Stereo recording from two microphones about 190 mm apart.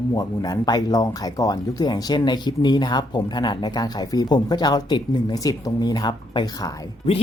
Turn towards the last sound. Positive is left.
turn(degrees=25)  # may be behind; listen again after turning